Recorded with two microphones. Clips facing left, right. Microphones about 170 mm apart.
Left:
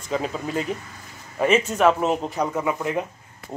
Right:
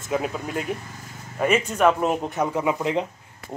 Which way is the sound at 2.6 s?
15° right (ahead or behind).